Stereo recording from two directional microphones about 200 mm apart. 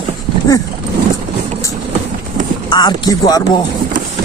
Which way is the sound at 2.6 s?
20° left (ahead or behind).